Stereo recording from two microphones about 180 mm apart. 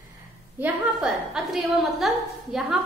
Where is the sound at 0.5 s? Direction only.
5° right (ahead or behind).